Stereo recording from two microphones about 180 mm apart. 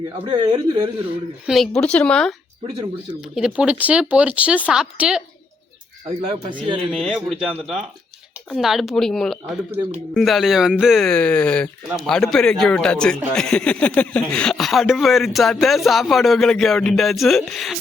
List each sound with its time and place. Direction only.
0.3 s speech: 25° right (ahead or behind)
1.5 s speech: centre (ahead or behind)
6.2 s speech: 25° right (ahead or behind)
6.9 s speech: centre (ahead or behind)